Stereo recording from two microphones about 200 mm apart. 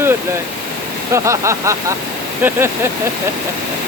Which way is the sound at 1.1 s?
15° right (ahead or behind).